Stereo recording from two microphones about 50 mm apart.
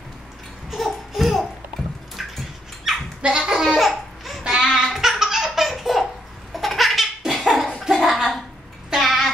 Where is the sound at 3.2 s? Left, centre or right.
Centre.